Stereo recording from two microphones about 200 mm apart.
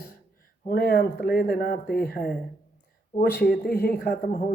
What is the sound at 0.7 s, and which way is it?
Speech, 50° left (ahead or behind).